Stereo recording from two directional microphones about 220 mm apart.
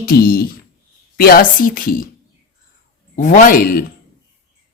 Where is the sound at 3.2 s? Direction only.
35° left (ahead or behind).